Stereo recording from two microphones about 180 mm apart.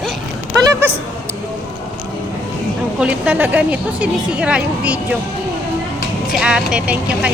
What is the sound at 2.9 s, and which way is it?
Speech, 5° right (ahead or behind).